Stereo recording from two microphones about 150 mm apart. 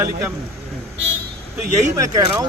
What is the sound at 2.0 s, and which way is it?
Speech, 25° right (ahead or behind).